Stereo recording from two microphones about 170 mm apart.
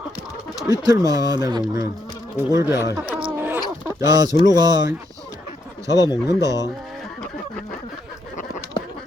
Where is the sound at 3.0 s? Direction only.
5° right (ahead or behind).